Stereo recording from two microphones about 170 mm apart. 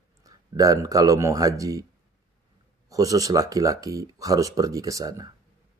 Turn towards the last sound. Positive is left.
turn(degrees=-20)  # may be behind; listen again after turning